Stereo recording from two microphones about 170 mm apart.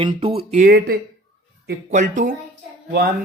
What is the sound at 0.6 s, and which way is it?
Speech, 65° right (ahead or behind).